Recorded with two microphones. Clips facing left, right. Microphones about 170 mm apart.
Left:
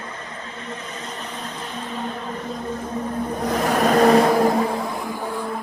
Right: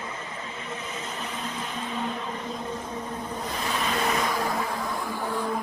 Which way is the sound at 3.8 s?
60° left (ahead or behind).